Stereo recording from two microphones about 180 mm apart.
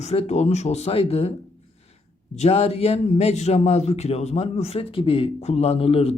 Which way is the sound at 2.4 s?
35° left (ahead or behind).